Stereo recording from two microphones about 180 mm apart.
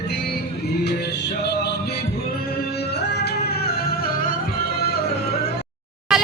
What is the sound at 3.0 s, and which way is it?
Music, 65° left (ahead or behind).